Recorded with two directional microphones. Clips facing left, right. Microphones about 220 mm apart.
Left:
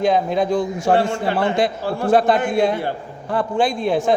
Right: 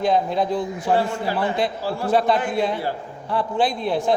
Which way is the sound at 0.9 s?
80° left.